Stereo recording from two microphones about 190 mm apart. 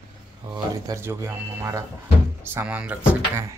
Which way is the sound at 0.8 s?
15° right (ahead or behind).